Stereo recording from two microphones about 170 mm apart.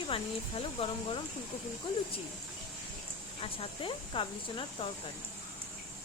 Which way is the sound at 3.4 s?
30° left (ahead or behind).